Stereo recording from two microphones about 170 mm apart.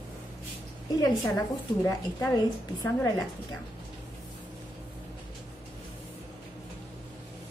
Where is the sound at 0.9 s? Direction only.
20° left (ahead or behind).